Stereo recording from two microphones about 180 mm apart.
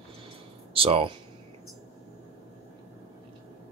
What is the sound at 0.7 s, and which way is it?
Speech, 30° right (ahead or behind).